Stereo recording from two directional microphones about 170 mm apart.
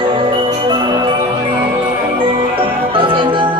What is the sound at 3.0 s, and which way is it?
Music, 30° right (ahead or behind).